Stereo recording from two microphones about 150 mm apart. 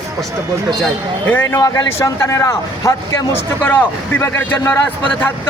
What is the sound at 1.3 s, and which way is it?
A man's voice, 15° left (ahead or behind).